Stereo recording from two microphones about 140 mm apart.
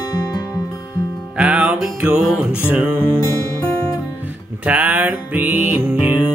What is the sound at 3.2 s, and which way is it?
Music, 15° left (ahead or behind).